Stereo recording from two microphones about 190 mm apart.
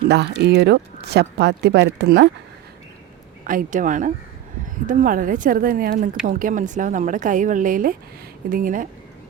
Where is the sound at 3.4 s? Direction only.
45° right (ahead or behind).